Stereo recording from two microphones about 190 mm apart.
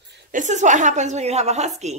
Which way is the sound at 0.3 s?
40° right (ahead or behind).